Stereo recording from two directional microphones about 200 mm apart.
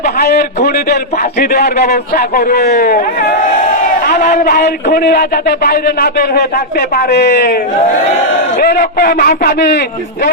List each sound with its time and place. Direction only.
0.2 s a man's voice: 50° left (ahead or behind)
8.5 s a man's voice: 45° left (ahead or behind)